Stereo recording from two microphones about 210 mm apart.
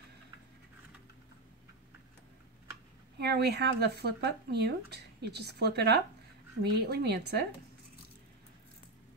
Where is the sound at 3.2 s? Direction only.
50° right (ahead or behind).